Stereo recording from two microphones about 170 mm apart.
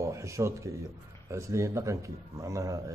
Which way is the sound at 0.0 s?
15° right (ahead or behind).